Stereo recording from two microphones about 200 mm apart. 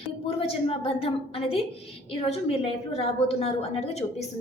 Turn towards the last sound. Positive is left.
turn(degrees=30)  # may be behind; listen again after turning